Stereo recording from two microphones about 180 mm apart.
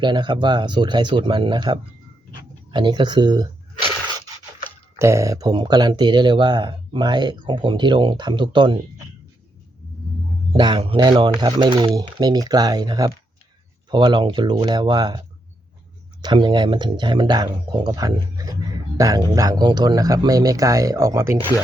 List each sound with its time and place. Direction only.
0.0 s speech: 25° right (ahead or behind)
2.7 s a sound: 25° right (ahead or behind)
4.9 s speech: 15° right (ahead or behind)
10.5 s speech: 25° right (ahead or behind)
16.2 s speech: 25° right (ahead or behind)